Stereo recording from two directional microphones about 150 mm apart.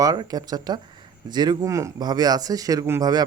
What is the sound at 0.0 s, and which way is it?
Speech, 25° right (ahead or behind).